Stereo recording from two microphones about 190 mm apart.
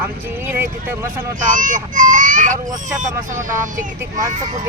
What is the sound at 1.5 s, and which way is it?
Speech, 45° right (ahead or behind).